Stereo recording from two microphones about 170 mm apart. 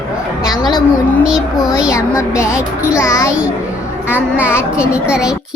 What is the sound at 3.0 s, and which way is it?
Speech, 15° left (ahead or behind).